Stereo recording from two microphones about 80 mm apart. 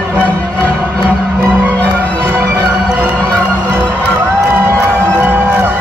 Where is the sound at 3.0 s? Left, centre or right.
Right.